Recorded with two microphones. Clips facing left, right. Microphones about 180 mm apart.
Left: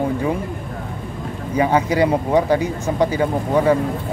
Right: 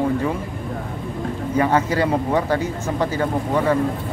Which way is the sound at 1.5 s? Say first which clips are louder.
Left 2 dB; 15° left (ahead or behind).